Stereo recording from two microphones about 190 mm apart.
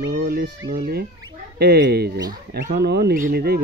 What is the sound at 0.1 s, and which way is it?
Speech, 55° right (ahead or behind).